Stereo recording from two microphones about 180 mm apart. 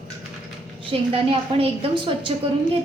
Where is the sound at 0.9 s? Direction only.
30° right (ahead or behind).